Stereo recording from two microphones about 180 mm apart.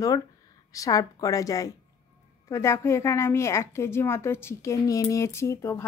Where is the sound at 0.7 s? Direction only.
20° left (ahead or behind).